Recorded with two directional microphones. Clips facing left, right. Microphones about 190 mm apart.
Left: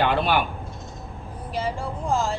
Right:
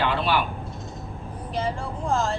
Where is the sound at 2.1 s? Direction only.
5° left (ahead or behind).